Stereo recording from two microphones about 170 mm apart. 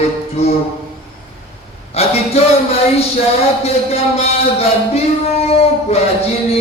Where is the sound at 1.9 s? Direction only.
35° left (ahead or behind).